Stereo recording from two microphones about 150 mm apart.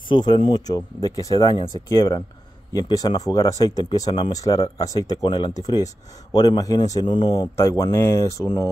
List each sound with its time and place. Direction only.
0.1 s speech: 30° left (ahead or behind)